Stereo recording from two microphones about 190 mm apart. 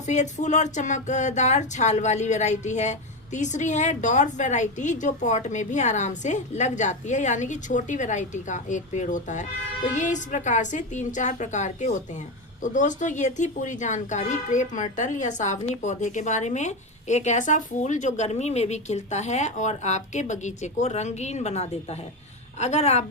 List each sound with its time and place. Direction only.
0.0 s speech: 40° left (ahead or behind)